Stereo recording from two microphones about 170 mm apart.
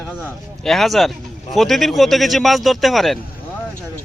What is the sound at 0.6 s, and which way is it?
Speech, centre (ahead or behind).